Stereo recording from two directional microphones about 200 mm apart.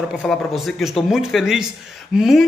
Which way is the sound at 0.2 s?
Centre (ahead or behind).